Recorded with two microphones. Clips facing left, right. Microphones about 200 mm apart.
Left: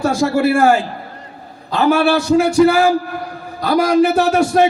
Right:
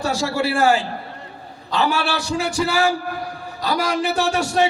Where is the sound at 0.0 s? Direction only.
55° left (ahead or behind).